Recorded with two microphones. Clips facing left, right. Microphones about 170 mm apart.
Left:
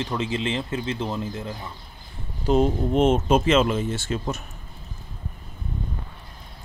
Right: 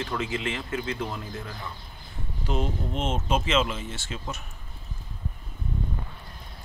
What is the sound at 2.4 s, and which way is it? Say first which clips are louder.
Speech: left 9 dB; 40° left (ahead or behind).